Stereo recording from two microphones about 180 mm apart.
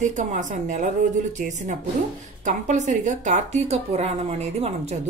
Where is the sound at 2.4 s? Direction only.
40° right (ahead or behind).